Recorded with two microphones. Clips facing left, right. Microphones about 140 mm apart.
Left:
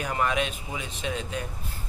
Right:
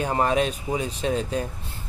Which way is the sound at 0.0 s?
35° right (ahead or behind).